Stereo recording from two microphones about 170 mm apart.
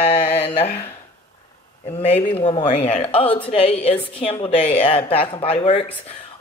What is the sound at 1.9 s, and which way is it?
Speech, 40° left (ahead or behind).